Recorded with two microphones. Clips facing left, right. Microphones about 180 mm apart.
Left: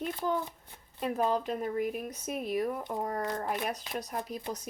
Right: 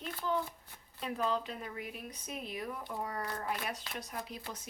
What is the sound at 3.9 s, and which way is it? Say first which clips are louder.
Speech: left 6 dB; 40° left (ahead or behind).